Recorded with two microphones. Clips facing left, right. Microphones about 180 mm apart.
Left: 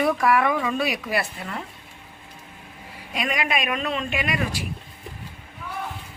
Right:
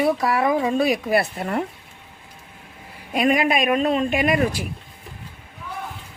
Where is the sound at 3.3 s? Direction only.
40° right (ahead or behind).